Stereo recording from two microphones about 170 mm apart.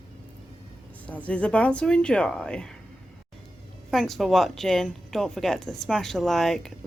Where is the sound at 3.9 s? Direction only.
Centre (ahead or behind).